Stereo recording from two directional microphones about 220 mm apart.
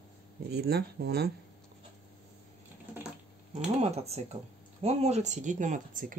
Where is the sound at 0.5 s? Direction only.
45° right (ahead or behind).